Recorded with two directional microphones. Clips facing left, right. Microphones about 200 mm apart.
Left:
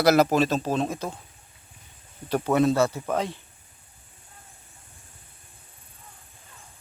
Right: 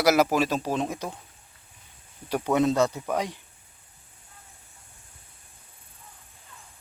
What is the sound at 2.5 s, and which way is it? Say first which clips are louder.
Speech: left 1 dB; 15° right (ahead or behind).